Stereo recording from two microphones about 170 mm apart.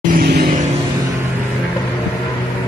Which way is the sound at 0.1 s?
65° right (ahead or behind).